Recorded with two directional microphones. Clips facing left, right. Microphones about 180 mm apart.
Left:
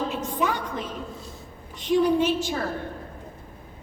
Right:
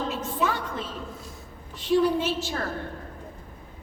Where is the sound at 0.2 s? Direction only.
15° left (ahead or behind).